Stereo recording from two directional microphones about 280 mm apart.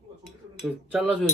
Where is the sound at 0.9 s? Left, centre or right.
Centre.